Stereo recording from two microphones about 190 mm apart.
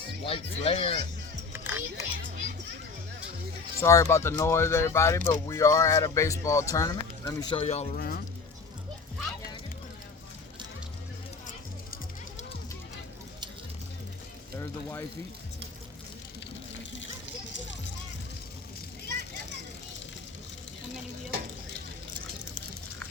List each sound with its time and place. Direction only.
0.3 s speech: 30° left (ahead or behind)
1.5 s music: 10° right (ahead or behind)
3.8 s speech: 15° left (ahead or behind)
7.6 s speech: 35° left (ahead or behind)
7.9 s speech: 50° left (ahead or behind)
14.6 s speech: 15° left (ahead or behind)